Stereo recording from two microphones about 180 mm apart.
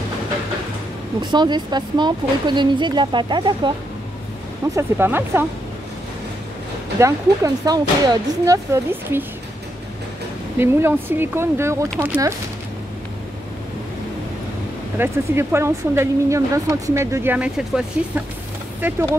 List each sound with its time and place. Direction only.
1.2 s speech: 25° right (ahead or behind)
4.7 s speech: 10° right (ahead or behind)
7.0 s speech: 20° right (ahead or behind)
10.6 s speech: 10° right (ahead or behind)
15.0 s speech: 15° right (ahead or behind)